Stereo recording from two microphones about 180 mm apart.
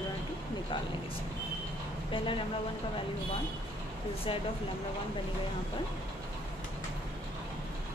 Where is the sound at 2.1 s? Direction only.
30° left (ahead or behind).